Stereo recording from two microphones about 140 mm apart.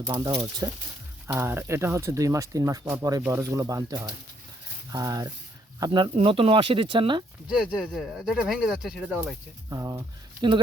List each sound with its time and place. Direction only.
0.1 s speech: 35° right (ahead or behind)
1.4 s speech: 15° right (ahead or behind); by 7.3 s 35° right (ahead or behind)
7.4 s speech: 5° right (ahead or behind)
9.6 s speech: 25° right (ahead or behind)